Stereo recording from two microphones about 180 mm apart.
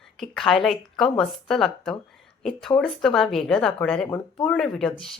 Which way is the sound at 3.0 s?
Centre (ahead or behind).